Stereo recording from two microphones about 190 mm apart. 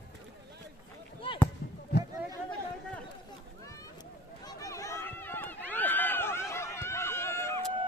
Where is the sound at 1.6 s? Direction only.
55° left (ahead or behind).